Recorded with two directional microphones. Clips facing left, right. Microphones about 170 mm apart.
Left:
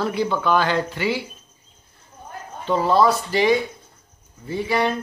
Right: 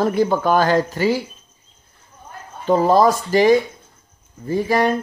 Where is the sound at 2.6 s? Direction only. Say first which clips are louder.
Right 4 dB; 45° right (ahead or behind).